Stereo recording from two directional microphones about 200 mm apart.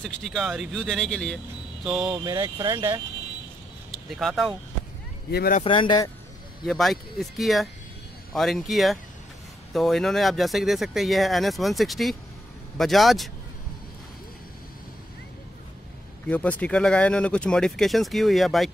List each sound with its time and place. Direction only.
0.0 s speech: centre (ahead or behind)
2.2 s speech: 20° right (ahead or behind)
4.1 s speech: centre (ahead or behind)
5.3 s speech: 50° left (ahead or behind)
5.6 s speech: 25° left (ahead or behind)
6.6 s speech: centre (ahead or behind)
16.3 s speech: 5° left (ahead or behind)